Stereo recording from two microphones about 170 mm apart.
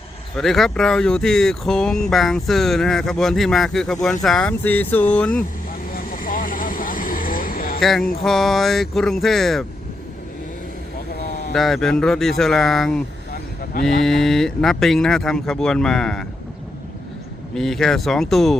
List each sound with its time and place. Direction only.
0.3 s speech: centre (ahead or behind)
5.9 s vehicle: 55° left (ahead or behind)
7.8 s speech: centre (ahead or behind)
11.5 s speech: centre (ahead or behind)
17.5 s speech: centre (ahead or behind)